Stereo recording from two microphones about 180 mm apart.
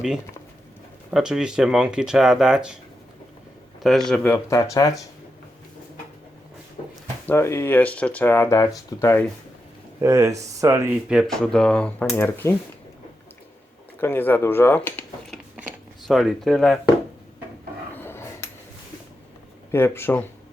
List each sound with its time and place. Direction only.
1.1 s speech: 5° right (ahead or behind)
3.8 s speech: centre (ahead or behind); by 4.9 s 20° left (ahead or behind)
7.3 s speech: 15° left (ahead or behind)
10.0 s speech: 15° right (ahead or behind)
11.1 s speech: centre (ahead or behind)
14.0 s speech: 10° left (ahead or behind)
17.9 s a sound: 10° left (ahead or behind)
19.7 s speech: 10° left (ahead or behind)